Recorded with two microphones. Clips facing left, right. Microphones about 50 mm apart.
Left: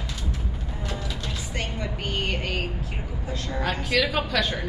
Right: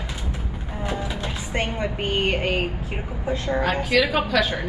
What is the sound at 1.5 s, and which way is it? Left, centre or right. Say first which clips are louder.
A woman's voice: right 7 dB; right.